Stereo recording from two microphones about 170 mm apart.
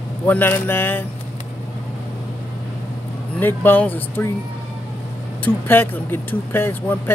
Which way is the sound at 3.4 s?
10° left (ahead or behind).